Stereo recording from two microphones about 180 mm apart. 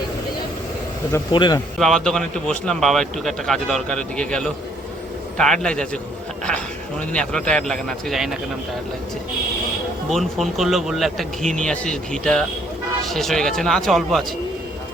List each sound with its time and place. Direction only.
1.3 s speech: 25° left (ahead or behind)
1.8 s speech: centre (ahead or behind)
7.1 s speech: 5° left (ahead or behind)
10.1 s speech: centre (ahead or behind)